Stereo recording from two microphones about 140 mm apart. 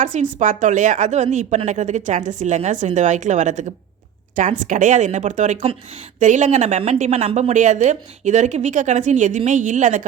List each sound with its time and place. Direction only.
0.0 s a woman's voice: 60° right (ahead or behind)